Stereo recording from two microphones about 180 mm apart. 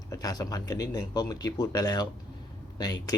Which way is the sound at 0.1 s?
20° left (ahead or behind).